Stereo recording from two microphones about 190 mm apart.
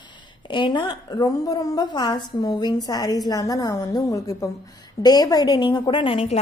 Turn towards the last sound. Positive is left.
turn(degrees=30)  # may be behind; listen again after turning